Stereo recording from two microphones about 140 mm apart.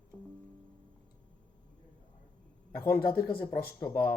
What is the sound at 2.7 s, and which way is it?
Speech, 90° left.